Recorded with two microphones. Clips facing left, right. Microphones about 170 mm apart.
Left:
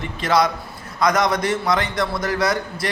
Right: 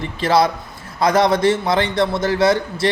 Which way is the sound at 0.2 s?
30° right (ahead or behind).